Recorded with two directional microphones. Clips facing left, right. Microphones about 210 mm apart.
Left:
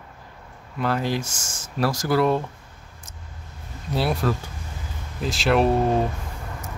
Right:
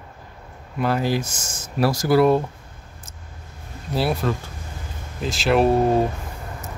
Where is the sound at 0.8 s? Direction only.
10° right (ahead or behind).